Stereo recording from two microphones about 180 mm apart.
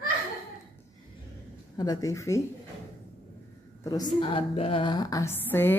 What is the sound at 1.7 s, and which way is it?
Speech, 20° left (ahead or behind).